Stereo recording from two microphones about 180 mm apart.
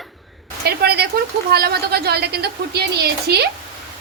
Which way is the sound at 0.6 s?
60° right (ahead or behind).